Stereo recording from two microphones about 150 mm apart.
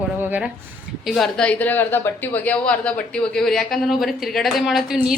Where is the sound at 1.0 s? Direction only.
5° left (ahead or behind).